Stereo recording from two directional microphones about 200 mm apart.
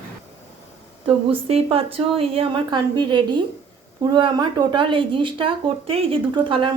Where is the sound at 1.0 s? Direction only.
25° right (ahead or behind).